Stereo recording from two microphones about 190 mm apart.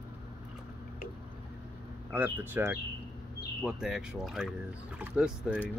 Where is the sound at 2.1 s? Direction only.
10° right (ahead or behind).